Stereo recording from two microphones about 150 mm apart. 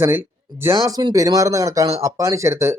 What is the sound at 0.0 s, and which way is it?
Speech, 15° right (ahead or behind).